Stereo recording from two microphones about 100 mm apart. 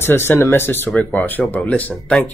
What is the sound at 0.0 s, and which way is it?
Speech, 25° left (ahead or behind).